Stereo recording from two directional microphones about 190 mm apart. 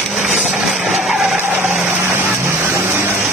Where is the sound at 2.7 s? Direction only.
15° right (ahead or behind).